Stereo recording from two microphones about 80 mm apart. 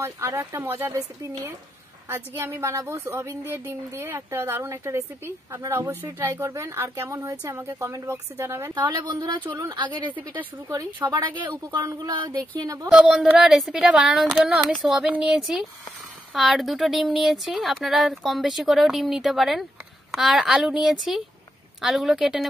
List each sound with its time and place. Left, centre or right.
0.4 s speech: right
2.0 s speech: right
9.0 s speech: right
10.0 s speech: right
10.9 s speech: right
11.8 s speech: right
12.1 s speech: right
12.6 s speech: right
13.0 s speech: centre